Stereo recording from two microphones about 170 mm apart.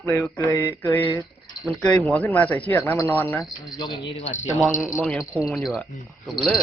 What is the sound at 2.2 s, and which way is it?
Speech, 10° left (ahead or behind).